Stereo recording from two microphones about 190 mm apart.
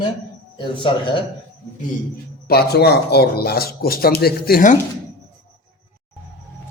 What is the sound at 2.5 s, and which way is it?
Speech, 55° left (ahead or behind).